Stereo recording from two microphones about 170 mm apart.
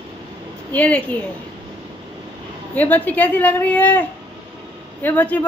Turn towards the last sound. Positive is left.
turn(degrees=10)  # may be behind; listen again after turning